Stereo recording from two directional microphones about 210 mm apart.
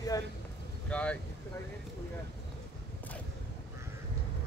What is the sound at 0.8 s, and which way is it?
Speech, 5° left (ahead or behind).